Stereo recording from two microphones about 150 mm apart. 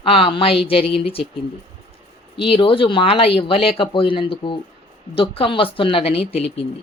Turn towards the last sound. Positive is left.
turn(degrees=40)  # may be behind; listen again after turning